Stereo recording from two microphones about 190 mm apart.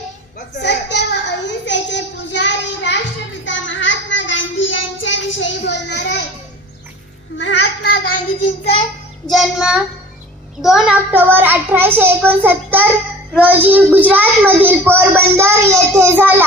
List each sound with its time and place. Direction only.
0.3 s a sound: 60° left (ahead or behind)
3.4 s child singing: 75° left (ahead or behind)
7.3 s child singing: 90° left
9.3 s a child's voice: centre (ahead or behind)